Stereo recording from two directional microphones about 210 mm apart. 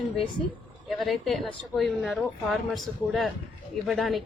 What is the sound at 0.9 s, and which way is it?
A woman's voice, centre (ahead or behind).